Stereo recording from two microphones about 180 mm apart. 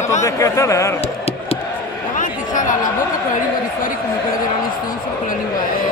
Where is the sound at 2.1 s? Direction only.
45° left (ahead or behind).